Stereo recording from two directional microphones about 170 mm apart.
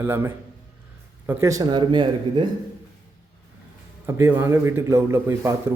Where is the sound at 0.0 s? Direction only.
10° right (ahead or behind); by 2.5 s 25° right (ahead or behind).